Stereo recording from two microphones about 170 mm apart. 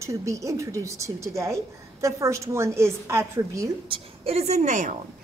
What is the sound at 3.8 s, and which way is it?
A woman's voice, 35° right (ahead or behind).